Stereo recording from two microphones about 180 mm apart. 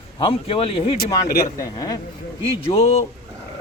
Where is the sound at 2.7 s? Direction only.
35° left (ahead or behind).